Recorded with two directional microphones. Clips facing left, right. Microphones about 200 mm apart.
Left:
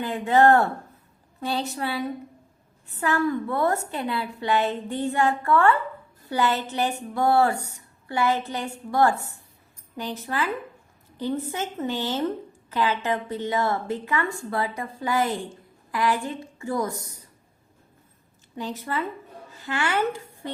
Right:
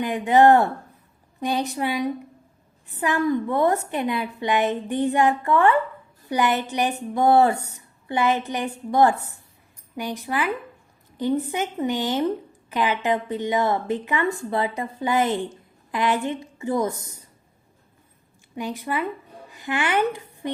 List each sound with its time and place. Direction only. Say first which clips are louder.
0.0 s a woman's voice: right 3 dB; 15° right (ahead or behind)
18.5 s a woman's voice: right 2 dB; 15° right (ahead or behind)